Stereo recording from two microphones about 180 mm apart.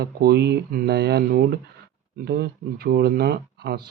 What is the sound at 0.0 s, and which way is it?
Speech, 60° right (ahead or behind).